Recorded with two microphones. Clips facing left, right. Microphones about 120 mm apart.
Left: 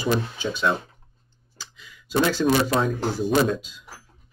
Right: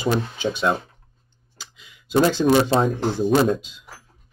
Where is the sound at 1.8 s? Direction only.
20° right (ahead or behind).